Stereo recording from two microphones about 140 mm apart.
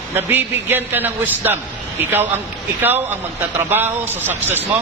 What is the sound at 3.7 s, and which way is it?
Speech, 15° right (ahead or behind).